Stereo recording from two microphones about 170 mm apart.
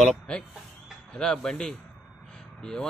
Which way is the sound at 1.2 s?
5° left (ahead or behind).